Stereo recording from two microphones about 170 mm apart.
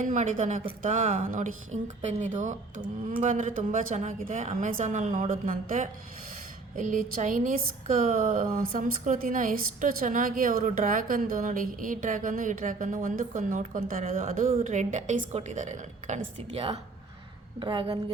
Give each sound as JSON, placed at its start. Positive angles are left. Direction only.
{"t": 0.0, "sound": "a woman's voice", "side_deg": -50}